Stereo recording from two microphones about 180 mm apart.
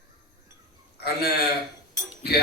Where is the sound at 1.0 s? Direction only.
65° left (ahead or behind).